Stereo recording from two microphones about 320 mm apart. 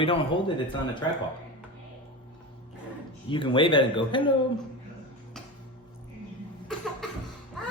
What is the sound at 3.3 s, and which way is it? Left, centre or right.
Speech, centre.